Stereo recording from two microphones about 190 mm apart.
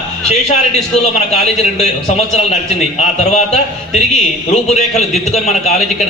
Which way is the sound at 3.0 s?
35° left (ahead or behind).